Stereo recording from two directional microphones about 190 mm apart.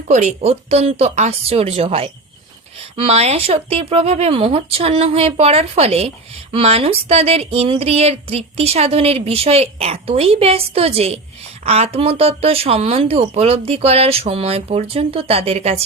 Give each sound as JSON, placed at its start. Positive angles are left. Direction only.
{"t": 0.1, "sound": "speech", "side_deg": -35}